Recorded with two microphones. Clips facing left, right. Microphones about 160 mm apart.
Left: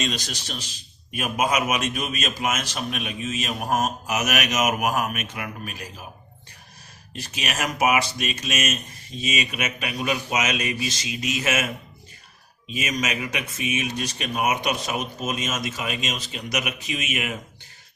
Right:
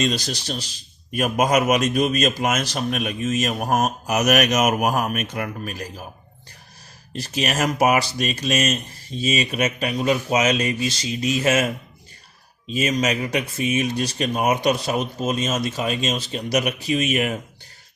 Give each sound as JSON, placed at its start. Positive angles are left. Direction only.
{"t": 0.0, "sound": "a man's voice", "side_deg": -35}
{"t": 7.1, "sound": "a man's voice", "side_deg": -40}